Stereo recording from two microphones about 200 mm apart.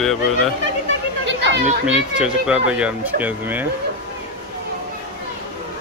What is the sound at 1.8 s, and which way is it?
Speech, 5° right (ahead or behind).